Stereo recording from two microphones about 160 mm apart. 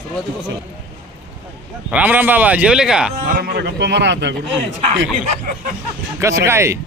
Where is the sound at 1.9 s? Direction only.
10° right (ahead or behind).